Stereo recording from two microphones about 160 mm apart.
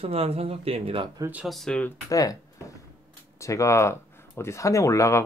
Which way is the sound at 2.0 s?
20° left (ahead or behind).